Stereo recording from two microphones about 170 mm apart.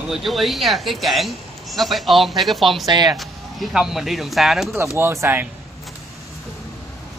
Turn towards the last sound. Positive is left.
turn(degrees=-15)  # may be behind; listen again after turning